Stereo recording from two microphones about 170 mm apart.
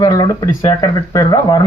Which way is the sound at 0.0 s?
25° left (ahead or behind).